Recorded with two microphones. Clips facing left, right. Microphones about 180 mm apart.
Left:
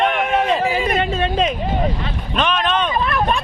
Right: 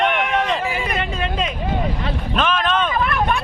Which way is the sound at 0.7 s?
30° left (ahead or behind).